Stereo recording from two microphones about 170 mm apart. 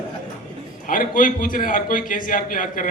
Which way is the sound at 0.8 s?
55° left (ahead or behind).